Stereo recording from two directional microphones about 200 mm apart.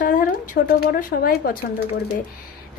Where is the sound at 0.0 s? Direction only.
45° left (ahead or behind).